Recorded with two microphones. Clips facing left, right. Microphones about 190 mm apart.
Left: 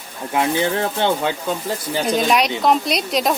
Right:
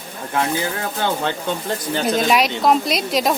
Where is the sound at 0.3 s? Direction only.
25° left (ahead or behind).